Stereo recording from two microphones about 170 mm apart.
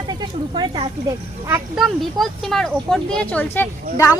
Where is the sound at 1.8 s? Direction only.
Centre (ahead or behind).